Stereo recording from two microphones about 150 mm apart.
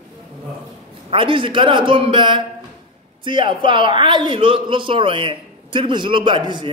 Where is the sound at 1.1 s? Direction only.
35° right (ahead or behind).